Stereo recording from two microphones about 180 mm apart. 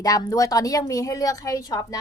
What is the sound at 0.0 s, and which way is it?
A woman's voice, 20° left (ahead or behind).